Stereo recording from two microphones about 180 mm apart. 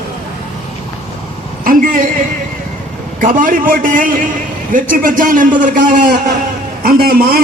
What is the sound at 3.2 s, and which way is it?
A man's voice, 50° right (ahead or behind).